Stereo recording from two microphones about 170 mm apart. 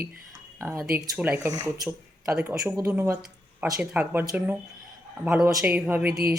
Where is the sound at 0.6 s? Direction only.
10° right (ahead or behind).